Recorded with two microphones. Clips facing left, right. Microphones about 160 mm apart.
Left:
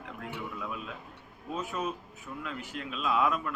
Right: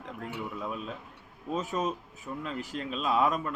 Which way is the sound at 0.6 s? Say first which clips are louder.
Right 3 dB; 35° right (ahead or behind).